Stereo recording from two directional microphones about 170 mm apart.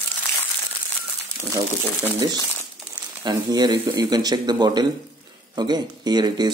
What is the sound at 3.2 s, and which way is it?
Speech, 25° right (ahead or behind).